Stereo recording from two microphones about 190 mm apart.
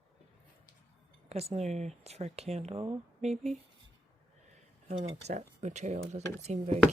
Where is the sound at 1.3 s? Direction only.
35° right (ahead or behind).